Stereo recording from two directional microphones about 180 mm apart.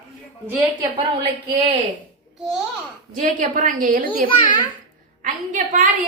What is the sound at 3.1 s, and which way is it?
Speech, 45° right (ahead or behind).